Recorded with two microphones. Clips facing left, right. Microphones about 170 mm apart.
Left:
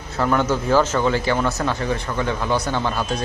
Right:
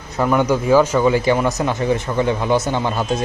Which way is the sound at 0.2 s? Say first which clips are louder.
Right 3 dB; 15° right (ahead or behind).